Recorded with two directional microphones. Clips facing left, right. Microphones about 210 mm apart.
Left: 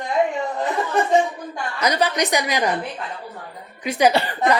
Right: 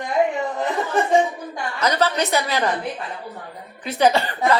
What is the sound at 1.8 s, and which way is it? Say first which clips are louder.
Speech: even; 15° left (ahead or behind).